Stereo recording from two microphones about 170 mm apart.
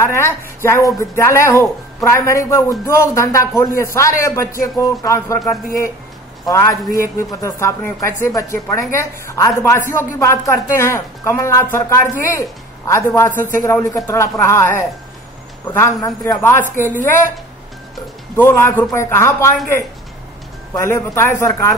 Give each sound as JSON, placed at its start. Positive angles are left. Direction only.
{"t": 0.0, "sound": "speech", "side_deg": 15}
{"t": 6.4, "sound": "a woman's voice", "side_deg": 20}
{"t": 18.3, "sound": "speech", "side_deg": 15}
{"t": 20.7, "sound": "speech", "side_deg": 15}